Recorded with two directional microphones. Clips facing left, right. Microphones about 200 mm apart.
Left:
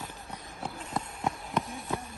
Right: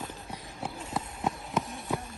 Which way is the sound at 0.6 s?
5° right (ahead or behind).